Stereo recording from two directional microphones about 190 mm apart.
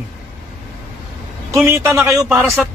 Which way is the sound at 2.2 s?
Centre (ahead or behind).